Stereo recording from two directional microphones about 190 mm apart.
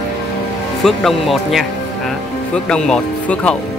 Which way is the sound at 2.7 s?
5° left (ahead or behind).